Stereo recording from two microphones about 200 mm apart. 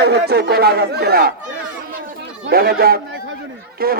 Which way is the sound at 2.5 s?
50° right (ahead or behind).